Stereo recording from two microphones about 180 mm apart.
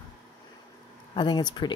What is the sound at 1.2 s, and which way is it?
Speech, 25° left (ahead or behind).